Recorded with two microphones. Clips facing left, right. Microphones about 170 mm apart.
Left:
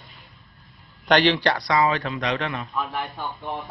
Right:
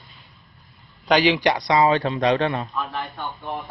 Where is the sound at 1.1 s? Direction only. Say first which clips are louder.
Right 1 dB; 10° right (ahead or behind).